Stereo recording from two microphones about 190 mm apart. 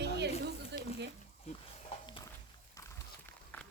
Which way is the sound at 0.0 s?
60° right (ahead or behind).